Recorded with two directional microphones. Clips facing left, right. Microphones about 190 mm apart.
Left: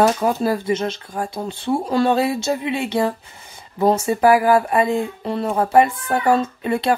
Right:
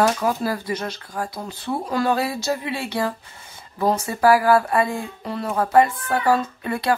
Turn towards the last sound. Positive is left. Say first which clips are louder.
# left 3 dB
turn(degrees=25)  # may be behind; listen again after turning